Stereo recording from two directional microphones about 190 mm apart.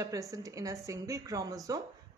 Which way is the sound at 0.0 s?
15° right (ahead or behind).